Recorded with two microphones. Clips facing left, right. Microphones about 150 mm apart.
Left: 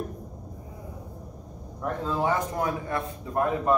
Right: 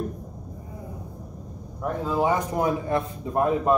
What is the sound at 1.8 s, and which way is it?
Speech, 15° right (ahead or behind).